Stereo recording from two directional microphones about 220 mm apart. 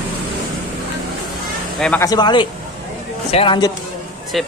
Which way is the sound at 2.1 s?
20° left (ahead or behind).